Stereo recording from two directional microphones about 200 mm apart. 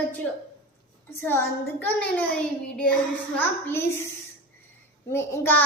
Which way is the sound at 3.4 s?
10° left (ahead or behind).